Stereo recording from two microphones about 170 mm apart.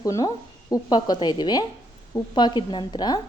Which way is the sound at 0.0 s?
20° left (ahead or behind).